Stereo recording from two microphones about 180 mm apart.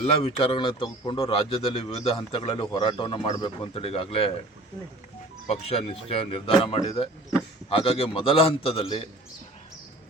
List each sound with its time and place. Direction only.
0.0 s speech: 35° left (ahead or behind)
5.5 s speech: 35° left (ahead or behind)